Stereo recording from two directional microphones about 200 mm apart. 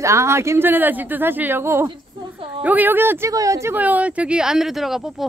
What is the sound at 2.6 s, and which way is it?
Speech, 10° right (ahead or behind).